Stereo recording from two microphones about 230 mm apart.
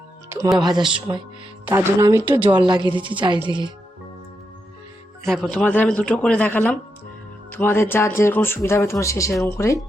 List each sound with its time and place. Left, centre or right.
0.3 s a woman's voice: centre
5.2 s a man's voice: centre
9.3 s a man's voice: centre
9.6 s speech: centre